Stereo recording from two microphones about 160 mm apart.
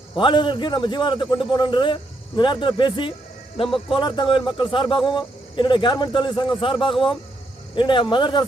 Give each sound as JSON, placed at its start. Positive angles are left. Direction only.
{"t": 0.2, "sound": "a man's voice", "side_deg": 30}
{"t": 7.8, "sound": "a man's voice", "side_deg": 30}